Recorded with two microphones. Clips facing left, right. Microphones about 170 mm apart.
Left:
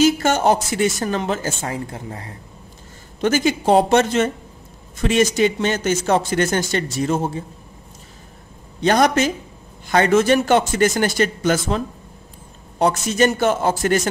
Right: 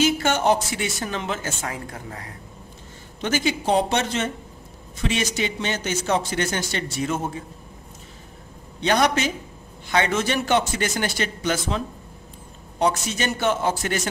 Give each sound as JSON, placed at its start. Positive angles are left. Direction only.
{"t": 0.0, "sound": "speech", "side_deg": 40}
{"t": 3.2, "sound": "a man's voice", "side_deg": 45}
{"t": 8.8, "sound": "a man's voice", "side_deg": 45}